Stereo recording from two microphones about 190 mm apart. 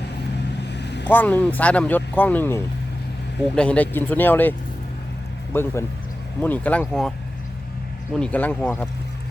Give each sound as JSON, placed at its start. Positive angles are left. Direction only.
{"t": 0.6, "sound": "vehicle", "side_deg": 65}
{"t": 1.0, "sound": "speech", "side_deg": 10}
{"t": 5.5, "sound": "speech", "side_deg": 10}
{"t": 8.1, "sound": "speech", "side_deg": 5}